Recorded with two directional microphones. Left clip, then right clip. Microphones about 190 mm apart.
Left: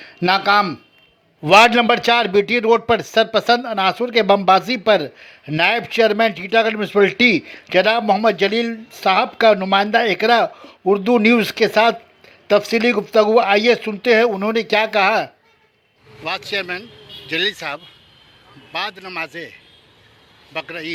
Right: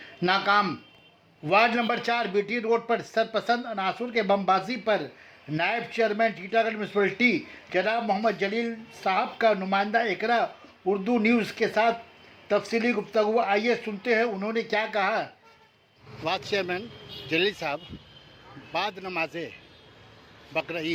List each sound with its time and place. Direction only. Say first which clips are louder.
0.0 s speech: left 8 dB; 35° left (ahead or behind)
16.2 s speech: left 5 dB; centre (ahead or behind)